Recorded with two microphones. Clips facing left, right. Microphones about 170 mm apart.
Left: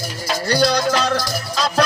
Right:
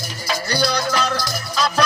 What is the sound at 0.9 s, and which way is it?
Music, 25° left (ahead or behind).